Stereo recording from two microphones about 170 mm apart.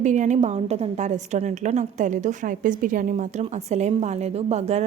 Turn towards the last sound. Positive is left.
turn(degrees=-40)  # may be behind; listen again after turning